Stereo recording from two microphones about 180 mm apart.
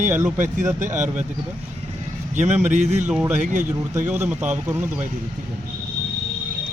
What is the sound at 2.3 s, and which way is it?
Speech, 40° right (ahead or behind).